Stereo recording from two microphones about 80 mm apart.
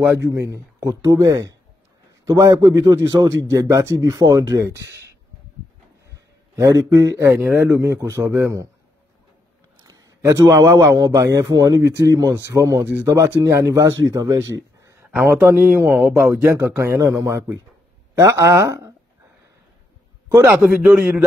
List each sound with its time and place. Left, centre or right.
0.0 s speech: right
0.3 s a man's voice: right
6.5 s speech: right
7.2 s speech: right
7.7 s speech: right
9.8 s a man's voice: right
14.8 s a sound: right
15.0 s speech: centre
16.0 s a man's voice: centre
16.3 s a woman's voice: centre; by 18.9 s right
20.8 s a man's voice: centre